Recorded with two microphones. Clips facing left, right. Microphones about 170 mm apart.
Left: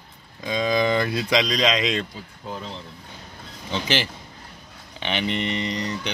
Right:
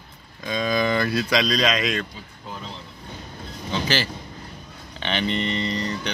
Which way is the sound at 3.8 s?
20° left (ahead or behind).